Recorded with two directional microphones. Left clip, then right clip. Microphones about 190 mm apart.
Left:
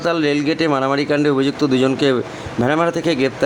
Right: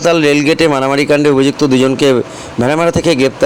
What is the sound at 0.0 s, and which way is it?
Speech, 20° right (ahead or behind).